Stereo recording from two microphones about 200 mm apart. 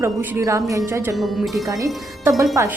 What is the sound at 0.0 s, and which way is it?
Speech, 10° right (ahead or behind).